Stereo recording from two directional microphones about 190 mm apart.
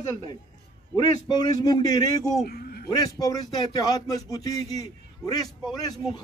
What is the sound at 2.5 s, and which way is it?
Speech, 55° left (ahead or behind).